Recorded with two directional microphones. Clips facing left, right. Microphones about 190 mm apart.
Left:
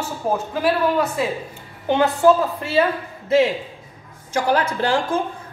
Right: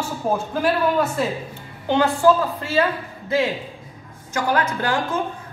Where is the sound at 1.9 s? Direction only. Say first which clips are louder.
Left 1 dB; 20° left (ahead or behind).